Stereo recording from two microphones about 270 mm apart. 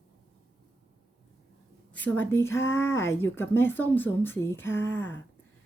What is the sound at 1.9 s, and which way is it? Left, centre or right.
A woman's voice, centre.